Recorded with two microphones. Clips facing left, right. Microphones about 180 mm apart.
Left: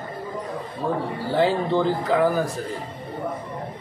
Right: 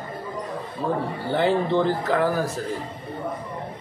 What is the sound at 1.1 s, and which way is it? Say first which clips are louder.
Speech: left 1 dB; centre (ahead or behind).